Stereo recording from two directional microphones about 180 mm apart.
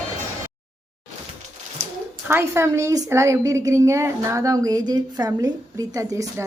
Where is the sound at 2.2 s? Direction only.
15° right (ahead or behind).